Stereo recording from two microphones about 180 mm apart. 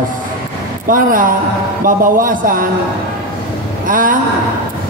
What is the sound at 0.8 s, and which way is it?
Speech, 50° right (ahead or behind).